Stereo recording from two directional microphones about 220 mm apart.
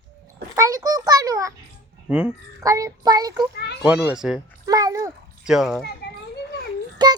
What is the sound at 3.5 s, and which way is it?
Children playing, 50° left (ahead or behind).